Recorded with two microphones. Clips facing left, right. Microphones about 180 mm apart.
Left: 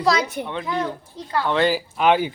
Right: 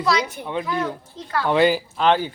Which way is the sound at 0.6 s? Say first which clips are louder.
Even; 20° left (ahead or behind).